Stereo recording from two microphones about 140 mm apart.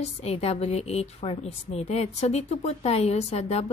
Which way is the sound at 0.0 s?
45° left (ahead or behind).